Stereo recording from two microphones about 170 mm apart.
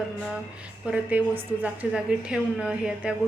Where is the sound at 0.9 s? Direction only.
10° right (ahead or behind).